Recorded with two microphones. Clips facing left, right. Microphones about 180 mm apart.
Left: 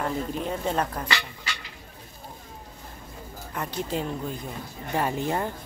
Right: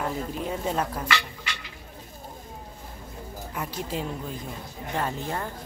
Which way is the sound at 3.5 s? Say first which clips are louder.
Left 2 dB; 5° right (ahead or behind).